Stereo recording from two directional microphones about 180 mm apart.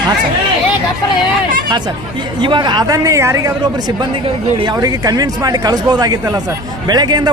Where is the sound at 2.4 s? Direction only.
25° right (ahead or behind).